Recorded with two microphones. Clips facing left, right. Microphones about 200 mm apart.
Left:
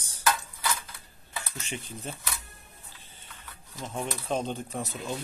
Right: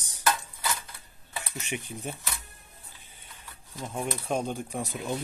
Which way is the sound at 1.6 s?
15° right (ahead or behind).